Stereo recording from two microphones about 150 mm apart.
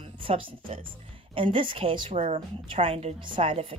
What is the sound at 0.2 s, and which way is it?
A woman's voice, 35° right (ahead or behind).